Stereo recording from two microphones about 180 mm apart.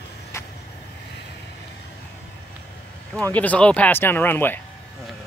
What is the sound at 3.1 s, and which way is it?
Speech, 10° left (ahead or behind).